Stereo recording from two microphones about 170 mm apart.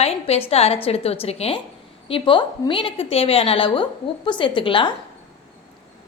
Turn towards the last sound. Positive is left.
turn(degrees=30)  # may be behind; listen again after turning